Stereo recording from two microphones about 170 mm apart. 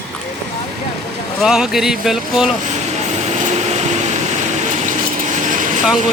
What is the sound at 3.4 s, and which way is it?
Vehicle, 40° right (ahead or behind).